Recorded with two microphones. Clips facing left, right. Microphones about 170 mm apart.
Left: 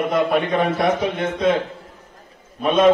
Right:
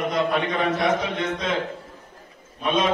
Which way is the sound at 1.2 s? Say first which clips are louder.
Left 7 dB; 55° left (ahead or behind).